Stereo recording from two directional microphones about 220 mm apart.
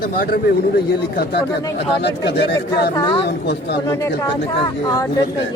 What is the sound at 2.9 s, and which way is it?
Speech, 20° left (ahead or behind).